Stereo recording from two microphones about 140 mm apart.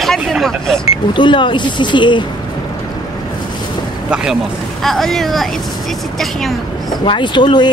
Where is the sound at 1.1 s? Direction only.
35° left (ahead or behind).